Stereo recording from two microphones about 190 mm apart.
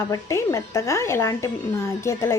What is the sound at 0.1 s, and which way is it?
A woman's voice, 15° left (ahead or behind).